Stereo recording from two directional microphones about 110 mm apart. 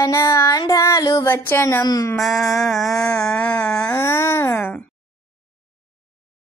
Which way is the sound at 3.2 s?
10° left (ahead or behind).